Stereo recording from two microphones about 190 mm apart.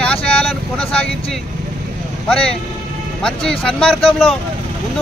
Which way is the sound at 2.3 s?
5° left (ahead or behind).